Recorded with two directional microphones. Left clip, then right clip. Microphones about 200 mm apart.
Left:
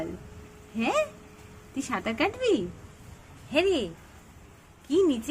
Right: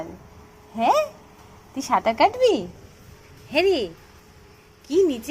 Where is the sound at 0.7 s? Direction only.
5° left (ahead or behind).